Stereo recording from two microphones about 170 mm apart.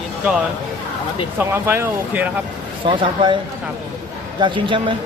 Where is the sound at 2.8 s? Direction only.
30° right (ahead or behind).